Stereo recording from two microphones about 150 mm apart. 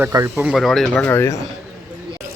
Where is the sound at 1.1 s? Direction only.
20° left (ahead or behind).